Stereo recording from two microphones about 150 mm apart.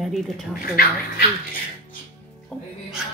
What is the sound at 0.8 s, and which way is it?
Speech, 90° left.